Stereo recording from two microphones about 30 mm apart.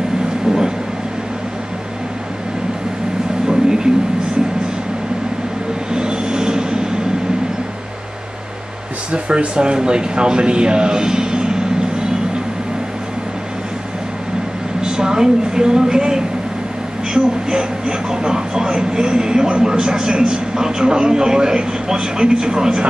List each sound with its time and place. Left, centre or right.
3.4 s a sound: right
5.9 s vehicle: right
9.1 s speech: right
9.6 s a man's voice: right
14.8 s a woman's voice: right